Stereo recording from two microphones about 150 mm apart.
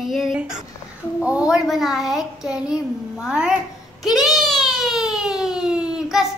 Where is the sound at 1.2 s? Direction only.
10° right (ahead or behind).